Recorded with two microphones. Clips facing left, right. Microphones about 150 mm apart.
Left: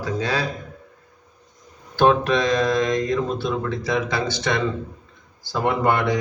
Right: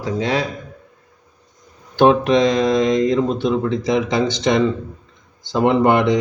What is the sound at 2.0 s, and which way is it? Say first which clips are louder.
Speech: right 4 dB; 20° right (ahead or behind).